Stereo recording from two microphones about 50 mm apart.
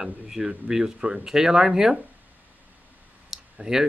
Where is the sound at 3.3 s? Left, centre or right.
Centre.